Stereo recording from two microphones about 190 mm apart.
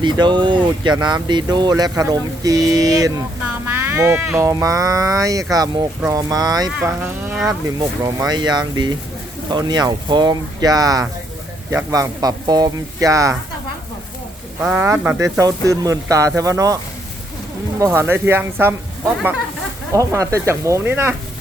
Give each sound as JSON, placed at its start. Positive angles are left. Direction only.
{"t": 0.0, "sound": "speech", "side_deg": -25}
{"t": 6.7, "sound": "speech", "side_deg": -10}
{"t": 7.8, "sound": "speech", "side_deg": -20}
{"t": 14.6, "sound": "speech", "side_deg": -10}
{"t": 19.9, "sound": "speech", "side_deg": -15}